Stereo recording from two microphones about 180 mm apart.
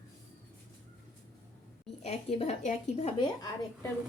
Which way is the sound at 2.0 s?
35° left (ahead or behind).